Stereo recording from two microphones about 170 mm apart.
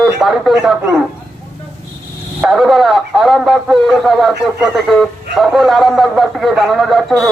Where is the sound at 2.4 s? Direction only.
Centre (ahead or behind).